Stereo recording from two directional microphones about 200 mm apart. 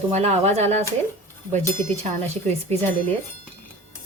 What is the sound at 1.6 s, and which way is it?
Speech, 10° left (ahead or behind).